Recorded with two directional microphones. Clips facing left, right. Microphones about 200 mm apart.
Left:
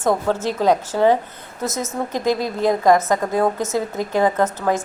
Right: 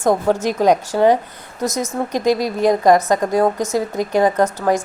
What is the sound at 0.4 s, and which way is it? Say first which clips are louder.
A woman's voice: right 1 dB; 15° right (ahead or behind).